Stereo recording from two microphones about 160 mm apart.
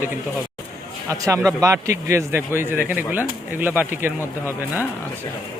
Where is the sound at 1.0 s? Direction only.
20° right (ahead or behind).